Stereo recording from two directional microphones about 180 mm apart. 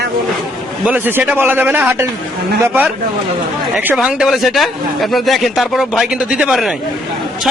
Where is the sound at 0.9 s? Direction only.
10° right (ahead or behind).